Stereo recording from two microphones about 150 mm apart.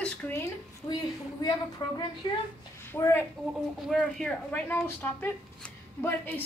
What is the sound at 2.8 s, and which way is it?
Speech, 15° left (ahead or behind).